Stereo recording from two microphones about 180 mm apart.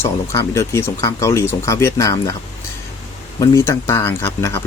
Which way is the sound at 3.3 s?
15° left (ahead or behind).